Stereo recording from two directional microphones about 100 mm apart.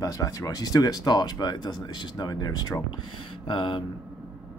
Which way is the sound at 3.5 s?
55° left (ahead or behind).